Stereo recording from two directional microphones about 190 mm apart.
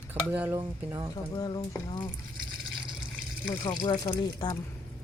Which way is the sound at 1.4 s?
20° left (ahead or behind).